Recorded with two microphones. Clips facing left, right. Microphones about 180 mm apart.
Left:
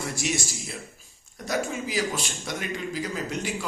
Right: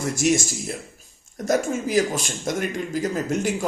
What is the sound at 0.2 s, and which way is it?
A man's voice, 45° right (ahead or behind).